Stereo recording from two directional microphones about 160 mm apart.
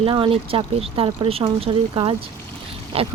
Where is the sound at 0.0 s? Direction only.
35° right (ahead or behind).